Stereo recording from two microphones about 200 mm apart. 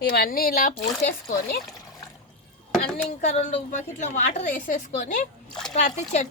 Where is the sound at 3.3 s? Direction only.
35° left (ahead or behind).